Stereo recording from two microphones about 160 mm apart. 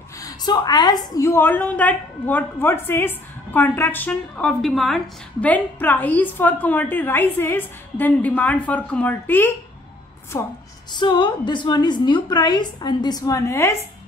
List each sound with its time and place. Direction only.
0.2 s a woman's voice: 25° left (ahead or behind)
10.9 s a woman's voice: 30° left (ahead or behind)